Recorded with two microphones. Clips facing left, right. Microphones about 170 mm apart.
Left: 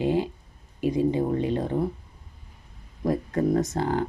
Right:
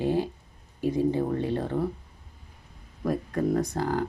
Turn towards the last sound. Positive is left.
turn(degrees=25)  # may be behind; listen again after turning